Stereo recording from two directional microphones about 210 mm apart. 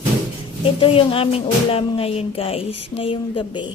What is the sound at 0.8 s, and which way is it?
Speech, 25° left (ahead or behind).